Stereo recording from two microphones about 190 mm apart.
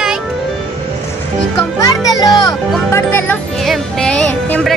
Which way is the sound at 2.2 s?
20° left (ahead or behind).